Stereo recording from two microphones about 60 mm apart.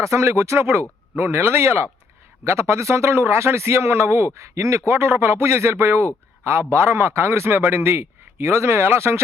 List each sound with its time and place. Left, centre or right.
0.0 s a man's voice: right
4.4 s speech: right
4.9 s a man's voice: right